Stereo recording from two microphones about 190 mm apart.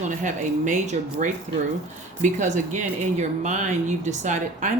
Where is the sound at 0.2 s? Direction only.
40° right (ahead or behind).